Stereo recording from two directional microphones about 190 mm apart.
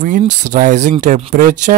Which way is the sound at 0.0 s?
45° right (ahead or behind).